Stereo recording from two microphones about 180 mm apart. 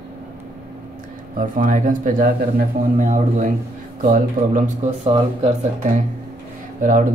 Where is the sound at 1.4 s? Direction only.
50° right (ahead or behind).